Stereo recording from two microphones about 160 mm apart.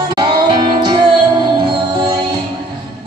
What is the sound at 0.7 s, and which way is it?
Music, 30° right (ahead or behind).